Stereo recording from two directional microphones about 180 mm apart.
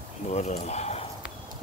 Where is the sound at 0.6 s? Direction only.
40° left (ahead or behind).